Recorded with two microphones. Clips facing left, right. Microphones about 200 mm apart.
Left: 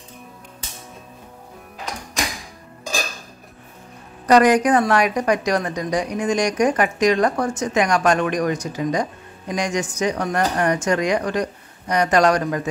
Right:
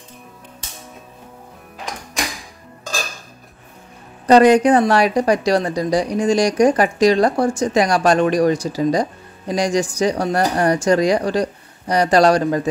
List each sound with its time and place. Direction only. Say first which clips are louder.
4.3 s a woman's voice: right 4 dB; 30° right (ahead or behind)